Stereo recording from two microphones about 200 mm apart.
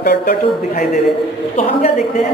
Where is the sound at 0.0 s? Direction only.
45° left (ahead or behind).